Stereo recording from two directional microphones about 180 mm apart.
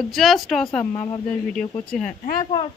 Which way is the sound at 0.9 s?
25° left (ahead or behind).